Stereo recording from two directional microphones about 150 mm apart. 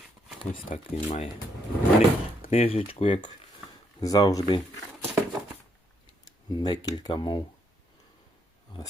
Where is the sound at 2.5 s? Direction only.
40° left (ahead or behind).